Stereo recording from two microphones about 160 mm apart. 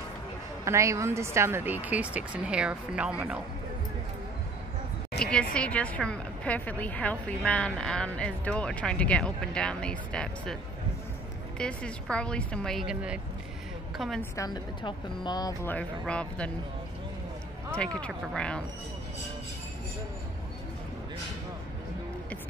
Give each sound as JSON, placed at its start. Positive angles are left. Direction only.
{"t": 0.7, "sound": "speech", "side_deg": -20}
{"t": 5.2, "sound": "a woman's voice", "side_deg": 5}
{"t": 14.3, "sound": "speech", "side_deg": 25}
{"t": 15.6, "sound": "a woman's voice", "side_deg": 10}
{"t": 17.7, "sound": "a woman's voice", "side_deg": 5}